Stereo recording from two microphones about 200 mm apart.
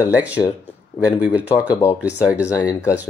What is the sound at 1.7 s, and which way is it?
Speech, 15° left (ahead or behind).